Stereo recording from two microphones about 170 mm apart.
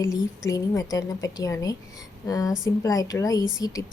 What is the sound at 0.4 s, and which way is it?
A woman's voice, 20° left (ahead or behind).